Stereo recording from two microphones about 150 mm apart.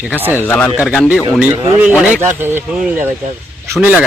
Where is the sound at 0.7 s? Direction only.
Centre (ahead or behind).